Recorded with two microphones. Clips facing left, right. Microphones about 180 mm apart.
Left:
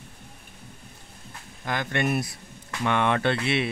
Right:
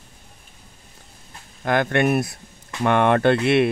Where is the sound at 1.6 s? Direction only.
55° right (ahead or behind).